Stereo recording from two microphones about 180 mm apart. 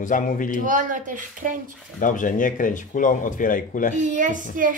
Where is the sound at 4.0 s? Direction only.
45° right (ahead or behind).